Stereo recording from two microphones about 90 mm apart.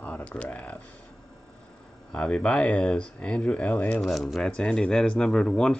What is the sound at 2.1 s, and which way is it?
Speech, 10° left (ahead or behind).